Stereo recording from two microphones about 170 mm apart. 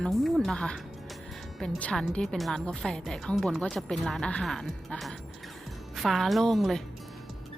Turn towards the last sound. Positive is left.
turn(degrees=0)  # may be behind; listen again after turning